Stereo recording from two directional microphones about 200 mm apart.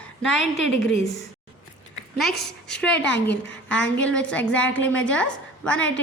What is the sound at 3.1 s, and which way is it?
Speech, 65° left (ahead or behind).